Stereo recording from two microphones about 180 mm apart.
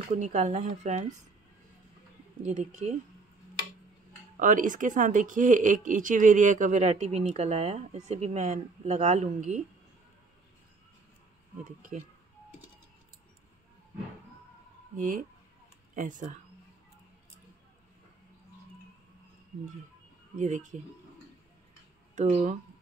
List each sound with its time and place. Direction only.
0.1 s speech: 45° right (ahead or behind)
2.4 s speech: 45° right (ahead or behind)
4.4 s speech: 45° right (ahead or behind)
15.0 s speech: 45° right (ahead or behind)
20.3 s speech: 45° right (ahead or behind)
22.1 s speech: 35° right (ahead or behind)